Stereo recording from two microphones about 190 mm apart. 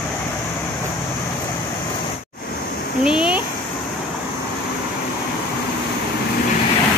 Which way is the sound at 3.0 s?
5° right (ahead or behind).